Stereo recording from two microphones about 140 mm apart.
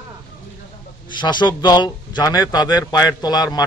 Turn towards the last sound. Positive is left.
turn(degrees=30)  # may be behind; listen again after turning